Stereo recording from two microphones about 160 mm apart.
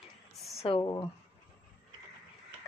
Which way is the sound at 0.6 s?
30° left (ahead or behind).